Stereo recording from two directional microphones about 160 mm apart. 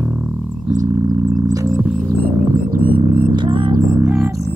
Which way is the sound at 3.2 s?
30° right (ahead or behind).